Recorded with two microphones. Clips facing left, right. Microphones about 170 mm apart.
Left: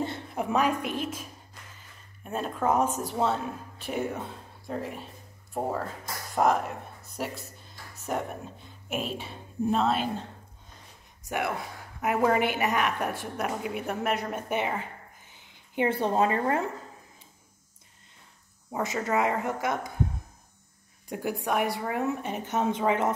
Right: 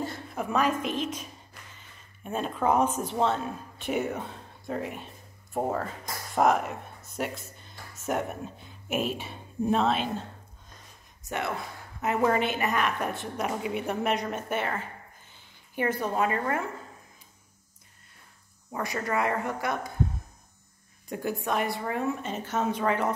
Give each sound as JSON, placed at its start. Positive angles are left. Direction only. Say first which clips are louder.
{"t": 0.0, "sound": "a woman's voice", "louder": "left 2 dB", "side_deg": 20}
{"t": 2.2, "sound": "a woman's voice", "louder": "right 1 dB", "side_deg": 0}
{"t": 2.9, "sound": "a woman's voice", "louder": "right 1 dB", "side_deg": 40}
{"t": 3.2, "sound": "a woman's voice", "louder": "right 1 dB", "side_deg": 5}
{"t": 7.9, "sound": "music", "louder": "right 2 dB", "side_deg": 0}
{"t": 8.8, "sound": "a woman's voice", "louder": "right 3 dB", "side_deg": -5}
{"t": 11.2, "sound": "a woman's voice", "louder": "left 1 dB", "side_deg": 15}
{"t": 13.5, "sound": "a woman's voice", "louder": "right 3 dB", "side_deg": -5}
{"t": 14.5, "sound": "a woman's voice", "louder": "left 3 dB", "side_deg": 15}
{"t": 18.7, "sound": "speech", "louder": "left 2 dB", "side_deg": 20}
{"t": 21.1, "sound": "a woman's voice", "louder": "left 1 dB", "side_deg": 15}